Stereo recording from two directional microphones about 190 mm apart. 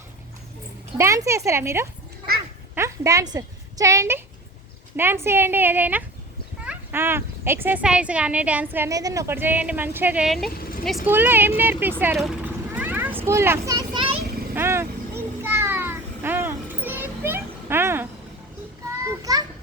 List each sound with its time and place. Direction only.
0.9 s a woman's voice: 15° right (ahead or behind); by 10.5 s centre (ahead or behind)
10.5 s vehicle: 50° left (ahead or behind)
11.0 s speech: 10° right (ahead or behind)
12.7 s a sound: 10° right (ahead or behind); by 14.2 s 25° right (ahead or behind)
14.5 s a sound: 10° right (ahead or behind)
19.0 s children playing: 20° right (ahead or behind)